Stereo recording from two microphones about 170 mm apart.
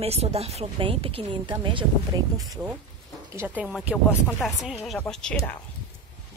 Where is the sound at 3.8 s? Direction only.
5° right (ahead or behind).